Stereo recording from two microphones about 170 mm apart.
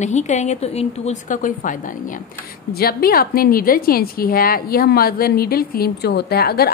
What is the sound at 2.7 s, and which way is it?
A woman's voice, 60° left (ahead or behind).